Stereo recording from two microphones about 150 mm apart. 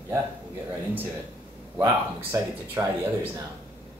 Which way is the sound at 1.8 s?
20° right (ahead or behind).